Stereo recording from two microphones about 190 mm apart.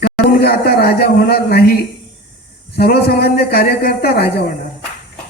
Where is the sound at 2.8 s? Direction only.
55° left (ahead or behind).